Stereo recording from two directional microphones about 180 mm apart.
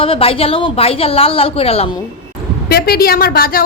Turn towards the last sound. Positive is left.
turn(degrees=55)  # may be behind; listen again after turning